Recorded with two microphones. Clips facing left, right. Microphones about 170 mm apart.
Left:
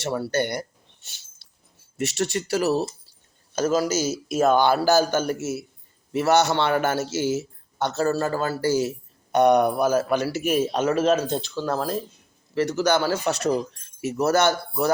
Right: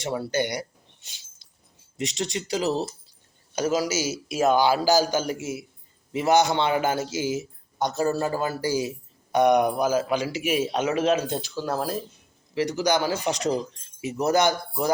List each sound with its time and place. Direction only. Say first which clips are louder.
0.0 s speech: left 2 dB; 15° right (ahead or behind)
2.0 s a man's voice: left 4 dB; 15° right (ahead or behind)